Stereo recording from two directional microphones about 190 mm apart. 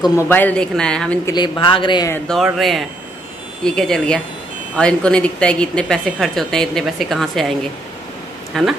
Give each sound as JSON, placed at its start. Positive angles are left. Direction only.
{"t": 0.3, "sound": "a woman's voice", "side_deg": 10}
{"t": 1.2, "sound": "speech", "side_deg": 20}
{"t": 2.2, "sound": "a woman's voice", "side_deg": 0}
{"t": 8.5, "sound": "a woman's voice", "side_deg": 0}